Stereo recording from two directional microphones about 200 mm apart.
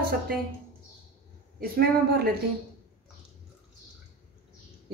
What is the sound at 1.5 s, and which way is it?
Speech, 50° right (ahead or behind).